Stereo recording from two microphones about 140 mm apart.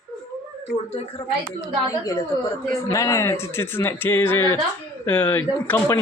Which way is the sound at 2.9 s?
25° left (ahead or behind).